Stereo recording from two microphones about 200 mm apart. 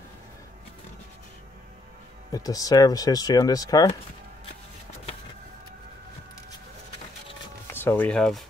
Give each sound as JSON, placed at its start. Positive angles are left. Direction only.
{"t": 2.3, "sound": "speech", "side_deg": 15}
{"t": 7.7, "sound": "speech", "side_deg": 10}